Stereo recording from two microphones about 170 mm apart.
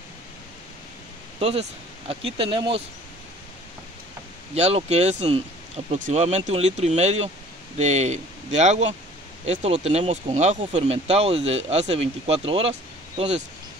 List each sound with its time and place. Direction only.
1.4 s speech: 35° right (ahead or behind)
4.6 s speech: 40° right (ahead or behind)